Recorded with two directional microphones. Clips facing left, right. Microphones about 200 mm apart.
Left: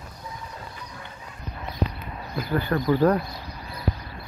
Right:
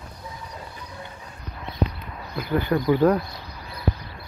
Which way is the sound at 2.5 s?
15° right (ahead or behind).